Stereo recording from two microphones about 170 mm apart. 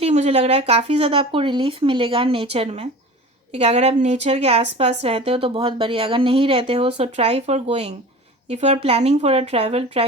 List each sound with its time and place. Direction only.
0.0 s speech: 40° right (ahead or behind)